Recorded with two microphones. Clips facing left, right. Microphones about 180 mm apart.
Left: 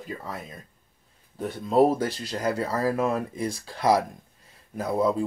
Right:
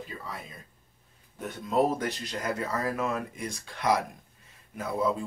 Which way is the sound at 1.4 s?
30° left (ahead or behind).